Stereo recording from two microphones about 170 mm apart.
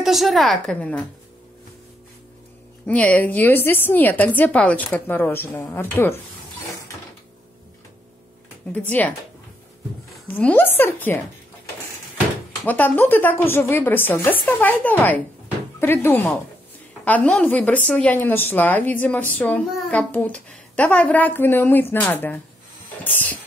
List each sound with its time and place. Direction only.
0.0 s a woman's voice: centre (ahead or behind)
2.9 s a woman's voice: 10° left (ahead or behind)
8.7 s a woman's voice: 10° left (ahead or behind)
10.3 s a woman's voice: 10° left (ahead or behind)
12.6 s a woman's voice: 10° left (ahead or behind)